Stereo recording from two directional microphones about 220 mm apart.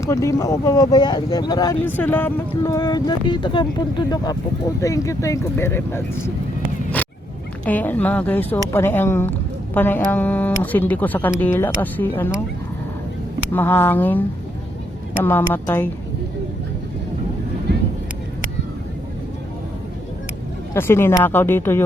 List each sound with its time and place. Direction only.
0.0 s speech: 15° left (ahead or behind)
7.6 s speech: 5° left (ahead or behind)
13.5 s speech: 10° left (ahead or behind)
20.7 s speech: 10° left (ahead or behind)